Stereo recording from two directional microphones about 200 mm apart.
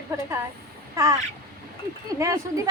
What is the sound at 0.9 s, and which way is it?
Crow, 15° right (ahead or behind).